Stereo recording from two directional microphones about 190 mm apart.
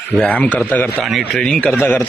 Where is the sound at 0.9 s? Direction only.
5° right (ahead or behind).